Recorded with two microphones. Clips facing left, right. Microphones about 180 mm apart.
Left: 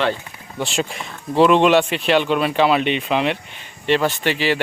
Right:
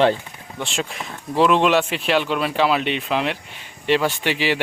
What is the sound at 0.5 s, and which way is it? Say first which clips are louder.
Speech: left 4 dB; centre (ahead or behind).